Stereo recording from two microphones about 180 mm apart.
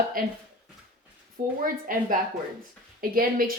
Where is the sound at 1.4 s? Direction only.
50° right (ahead or behind).